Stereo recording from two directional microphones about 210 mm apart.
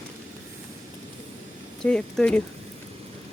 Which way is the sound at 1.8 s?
5° left (ahead or behind).